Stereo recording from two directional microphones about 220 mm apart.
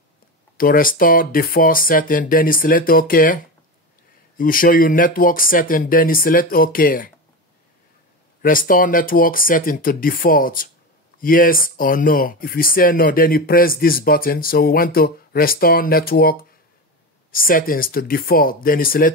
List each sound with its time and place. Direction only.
0.6 s speech: 40° left (ahead or behind)
4.4 s speech: 40° left (ahead or behind)
8.4 s speech: 40° left (ahead or behind)